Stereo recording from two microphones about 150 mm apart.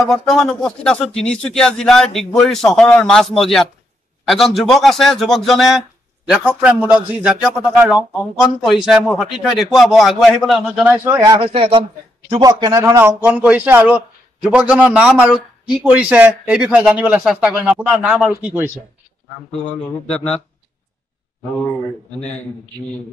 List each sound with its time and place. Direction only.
0.0 s a man's voice: centre (ahead or behind)
11.1 s speech: 25° right (ahead or behind)
11.4 s a man's voice: 40° right (ahead or behind)
12.3 s a man's voice: 25° right (ahead or behind)
19.6 s speech: 10° left (ahead or behind)